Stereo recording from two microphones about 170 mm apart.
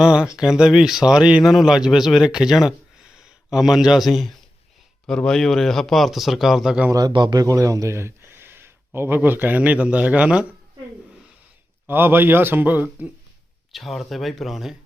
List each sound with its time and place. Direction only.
0.0 s speech: 5° right (ahead or behind)
6.9 s a man's voice: 25° right (ahead or behind); by 10.4 s 5° right (ahead or behind)
11.9 s a man's voice: 10° right (ahead or behind)